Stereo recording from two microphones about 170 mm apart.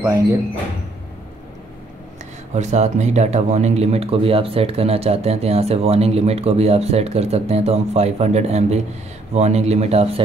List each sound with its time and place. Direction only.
0.0 s speech: 20° right (ahead or behind)
2.5 s speech: 40° right (ahead or behind)